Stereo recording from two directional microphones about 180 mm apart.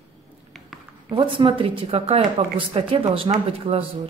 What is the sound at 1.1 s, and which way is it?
Speech, 25° right (ahead or behind).